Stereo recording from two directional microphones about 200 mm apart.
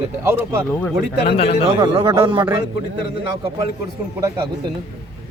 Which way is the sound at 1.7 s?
25° right (ahead or behind).